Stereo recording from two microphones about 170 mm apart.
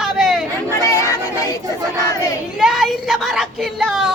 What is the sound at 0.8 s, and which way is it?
Child singing, 20° left (ahead or behind).